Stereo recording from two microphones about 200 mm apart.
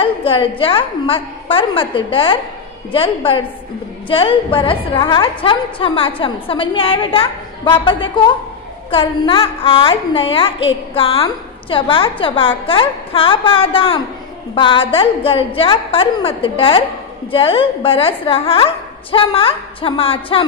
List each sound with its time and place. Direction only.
0.0 s a woman's voice: 25° left (ahead or behind)